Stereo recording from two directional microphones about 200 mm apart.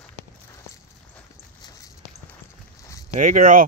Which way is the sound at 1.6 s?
20° left (ahead or behind).